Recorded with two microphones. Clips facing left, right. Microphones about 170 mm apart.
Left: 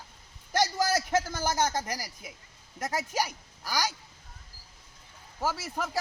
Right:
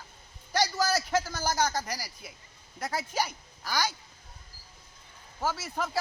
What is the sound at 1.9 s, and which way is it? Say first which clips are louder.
Speech: left 1 dB; 50° left (ahead or behind).